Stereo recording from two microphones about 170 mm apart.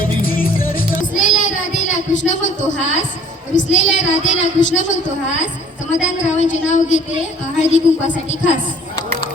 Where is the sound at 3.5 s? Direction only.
90° left.